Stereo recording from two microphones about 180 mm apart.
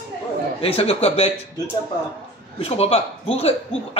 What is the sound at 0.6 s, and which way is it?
Speech, 30° left (ahead or behind).